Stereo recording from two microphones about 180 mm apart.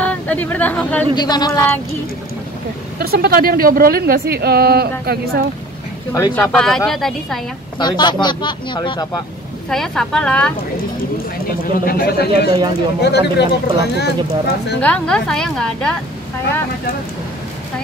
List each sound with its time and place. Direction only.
0.0 s speech: 10° left (ahead or behind)
1.1 s speech: 25° left (ahead or behind)
3.0 s speech: 60° right (ahead or behind)
6.1 s a woman's voice: 15° left (ahead or behind)
7.8 s speech: 25° left (ahead or behind)
9.7 s a woman's voice: 5° left (ahead or behind)
11.8 s speech: 55° left (ahead or behind)
14.8 s a woman's voice: 5° left (ahead or behind)